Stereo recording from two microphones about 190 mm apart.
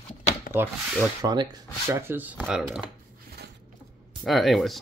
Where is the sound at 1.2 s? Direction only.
20° right (ahead or behind); by 2.8 s 5° right (ahead or behind).